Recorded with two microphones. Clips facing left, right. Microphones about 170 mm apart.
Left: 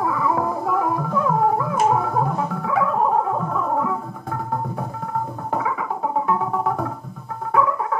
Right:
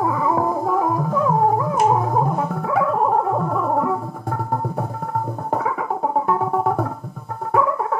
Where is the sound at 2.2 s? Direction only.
45° right (ahead or behind).